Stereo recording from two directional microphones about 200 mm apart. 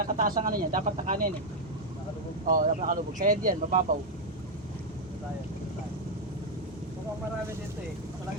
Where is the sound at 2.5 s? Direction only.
40° right (ahead or behind).